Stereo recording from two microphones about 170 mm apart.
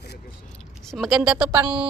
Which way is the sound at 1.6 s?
30° right (ahead or behind).